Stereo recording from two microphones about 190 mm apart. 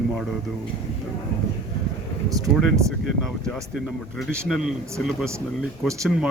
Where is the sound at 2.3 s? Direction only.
15° right (ahead or behind).